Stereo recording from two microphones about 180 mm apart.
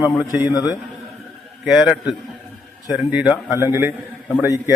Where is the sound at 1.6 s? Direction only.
5° right (ahead or behind).